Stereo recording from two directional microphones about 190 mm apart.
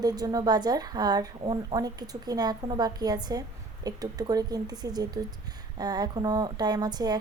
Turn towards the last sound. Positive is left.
turn(degrees=-20)  # may be behind; listen again after turning